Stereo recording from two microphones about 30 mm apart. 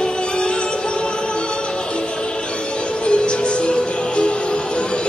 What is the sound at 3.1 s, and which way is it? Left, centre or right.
Music, left.